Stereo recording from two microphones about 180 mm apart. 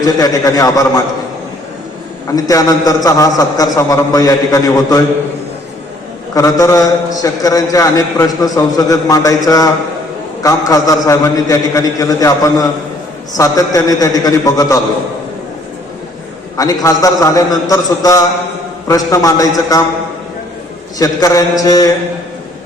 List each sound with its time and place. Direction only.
0.0 s a man's voice: 20° left (ahead or behind)
2.3 s a man's voice: 20° left (ahead or behind)
6.3 s a man's voice: 20° left (ahead or behind)
10.7 s a man's voice: 20° left (ahead or behind)
16.6 s a man's voice: 20° left (ahead or behind)
21.0 s a man's voice: 20° left (ahead or behind)